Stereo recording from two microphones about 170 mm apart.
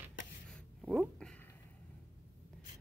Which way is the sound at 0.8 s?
Centre (ahead or behind).